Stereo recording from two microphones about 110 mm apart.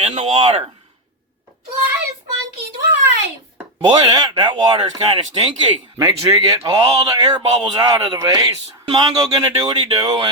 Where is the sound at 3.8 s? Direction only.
45° right (ahead or behind).